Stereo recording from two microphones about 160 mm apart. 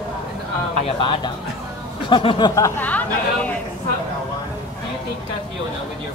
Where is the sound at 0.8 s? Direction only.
30° left (ahead or behind).